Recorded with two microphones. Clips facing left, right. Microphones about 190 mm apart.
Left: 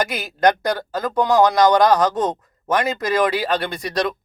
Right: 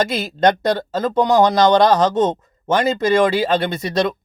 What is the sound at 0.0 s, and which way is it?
Speech, 25° right (ahead or behind).